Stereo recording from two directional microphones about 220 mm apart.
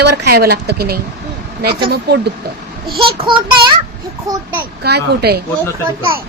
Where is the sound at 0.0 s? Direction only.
50° right (ahead or behind).